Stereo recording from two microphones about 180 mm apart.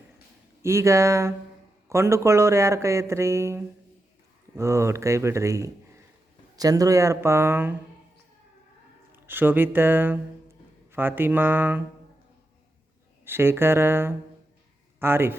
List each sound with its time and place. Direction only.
0.6 s speech: 15° right (ahead or behind)
9.1 s speech: 10° right (ahead or behind)
13.2 s a man's voice: 15° right (ahead or behind)